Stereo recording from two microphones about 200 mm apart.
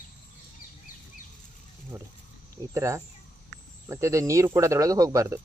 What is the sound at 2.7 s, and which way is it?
Speech, 15° right (ahead or behind).